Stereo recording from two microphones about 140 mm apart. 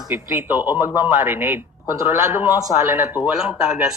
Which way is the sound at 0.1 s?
15° right (ahead or behind).